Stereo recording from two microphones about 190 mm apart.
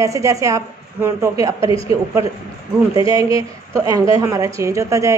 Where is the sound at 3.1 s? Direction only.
20° right (ahead or behind).